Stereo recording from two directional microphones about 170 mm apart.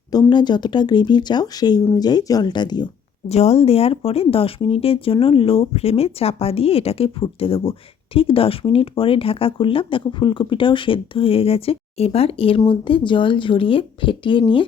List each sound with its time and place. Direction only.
0.1 s speech: 25° left (ahead or behind)
3.2 s speech: 40° left (ahead or behind)